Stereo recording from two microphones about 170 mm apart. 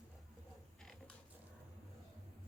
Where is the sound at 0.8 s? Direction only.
5° left (ahead or behind).